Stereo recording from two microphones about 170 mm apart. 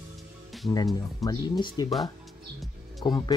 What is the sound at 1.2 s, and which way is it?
Speech, 20° left (ahead or behind).